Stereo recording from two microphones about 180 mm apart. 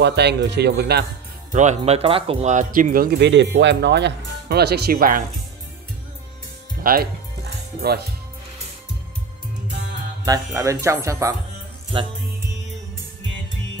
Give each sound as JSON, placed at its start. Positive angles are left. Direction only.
{"t": 0.0, "sound": "speech", "side_deg": -70}
{"t": 1.5, "sound": "speech", "side_deg": -40}
{"t": 6.8, "sound": "music", "side_deg": -55}
{"t": 10.2, "sound": "speech", "side_deg": -20}